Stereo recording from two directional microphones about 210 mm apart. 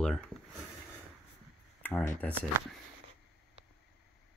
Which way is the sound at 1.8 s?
10° left (ahead or behind).